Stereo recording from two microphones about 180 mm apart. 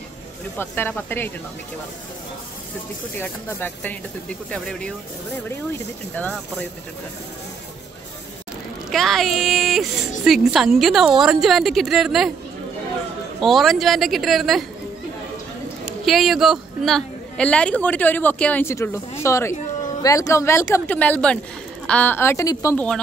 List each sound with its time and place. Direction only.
0.6 s a woman's voice: 10° left (ahead or behind)
3.2 s a woman's voice: 10° left (ahead or behind)
8.9 s a woman's voice: centre (ahead or behind)
13.4 s a woman's voice: centre (ahead or behind)
16.1 s a woman's voice: centre (ahead or behind); by 22.8 s 20° left (ahead or behind)